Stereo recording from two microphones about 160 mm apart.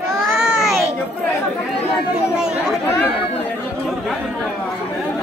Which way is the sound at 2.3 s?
5° right (ahead or behind).